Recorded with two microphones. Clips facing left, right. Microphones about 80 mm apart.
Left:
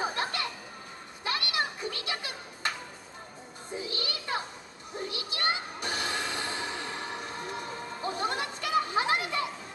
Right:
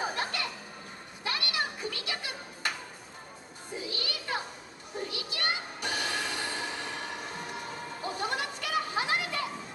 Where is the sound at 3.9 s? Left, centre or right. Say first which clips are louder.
Left 1 dB; left.